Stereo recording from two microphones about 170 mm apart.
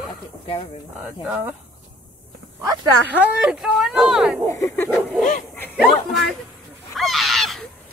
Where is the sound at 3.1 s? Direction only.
5° right (ahead or behind).